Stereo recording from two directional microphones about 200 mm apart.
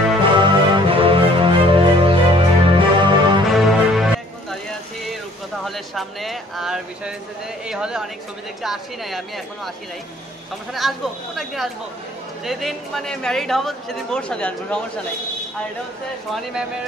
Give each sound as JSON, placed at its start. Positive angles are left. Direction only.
{"t": 0.2, "sound": "music", "side_deg": -25}
{"t": 3.4, "sound": "music", "side_deg": 0}
{"t": 5.7, "sound": "a man's voice", "side_deg": 0}
{"t": 10.7, "sound": "a man's voice", "side_deg": 0}